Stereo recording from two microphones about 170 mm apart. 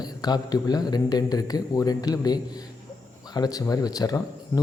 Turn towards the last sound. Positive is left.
turn(degrees=20)  # may be behind; listen again after turning